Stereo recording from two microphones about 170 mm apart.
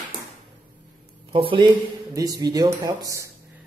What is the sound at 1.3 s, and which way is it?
Speech, 30° right (ahead or behind).